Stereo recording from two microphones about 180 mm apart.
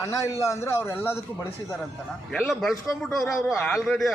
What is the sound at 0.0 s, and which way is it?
A man's voice, 15° left (ahead or behind).